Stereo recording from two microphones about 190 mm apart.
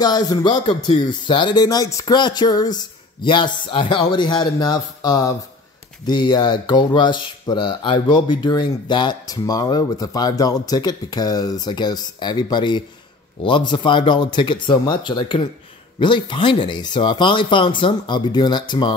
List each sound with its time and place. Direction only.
0.0 s speech: 20° left (ahead or behind)